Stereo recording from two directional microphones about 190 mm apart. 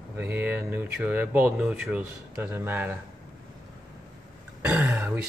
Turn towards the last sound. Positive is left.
turn(degrees=-10)  # may be behind; listen again after turning